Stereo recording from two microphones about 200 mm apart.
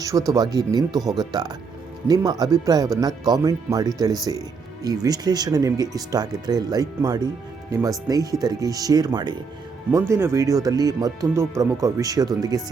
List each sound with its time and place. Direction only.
0.0 s speech: 15° right (ahead or behind)